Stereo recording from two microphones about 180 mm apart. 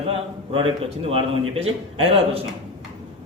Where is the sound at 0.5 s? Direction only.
30° right (ahead or behind).